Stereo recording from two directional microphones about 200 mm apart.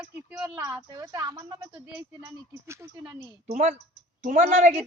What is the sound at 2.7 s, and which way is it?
Speech, 15° right (ahead or behind).